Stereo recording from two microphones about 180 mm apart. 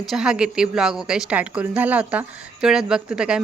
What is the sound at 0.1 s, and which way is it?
A woman's voice, 5° right (ahead or behind).